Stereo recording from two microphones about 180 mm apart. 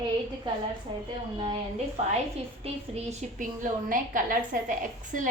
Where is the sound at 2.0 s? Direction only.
40° right (ahead or behind).